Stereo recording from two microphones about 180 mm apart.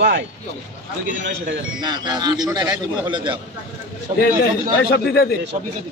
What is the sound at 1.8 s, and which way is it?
A man's voice, 25° right (ahead or behind).